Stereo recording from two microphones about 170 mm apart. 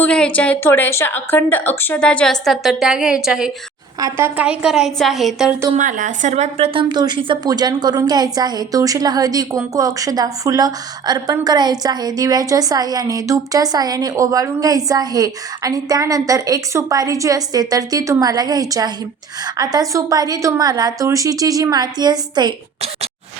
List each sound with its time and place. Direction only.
0.0 s a woman's voice: 5° left (ahead or behind)
5.7 s a woman's voice: 50° right (ahead or behind)
6.8 s a woman's voice: 25° right (ahead or behind)